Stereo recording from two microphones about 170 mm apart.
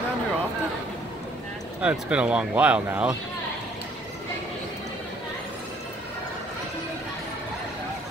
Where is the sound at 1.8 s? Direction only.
5° right (ahead or behind).